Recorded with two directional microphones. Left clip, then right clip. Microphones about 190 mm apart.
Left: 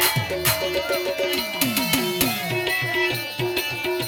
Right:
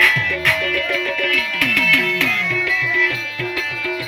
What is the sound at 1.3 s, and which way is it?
Music, 65° left (ahead or behind).